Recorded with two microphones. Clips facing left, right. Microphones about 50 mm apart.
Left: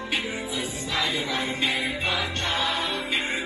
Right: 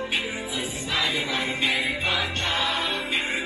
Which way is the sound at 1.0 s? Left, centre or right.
Right.